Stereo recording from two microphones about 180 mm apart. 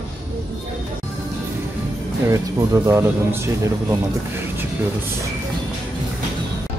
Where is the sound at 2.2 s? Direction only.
15° right (ahead or behind).